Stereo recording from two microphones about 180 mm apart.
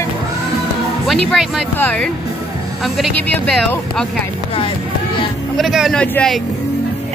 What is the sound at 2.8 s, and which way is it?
Speech, centre (ahead or behind).